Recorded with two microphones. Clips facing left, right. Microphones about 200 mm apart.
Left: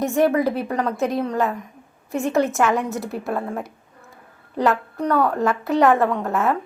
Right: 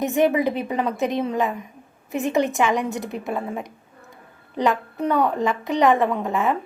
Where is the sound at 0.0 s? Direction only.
Centre (ahead or behind).